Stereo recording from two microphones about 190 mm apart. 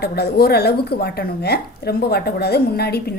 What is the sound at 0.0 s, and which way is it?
Speech, 55° left (ahead or behind).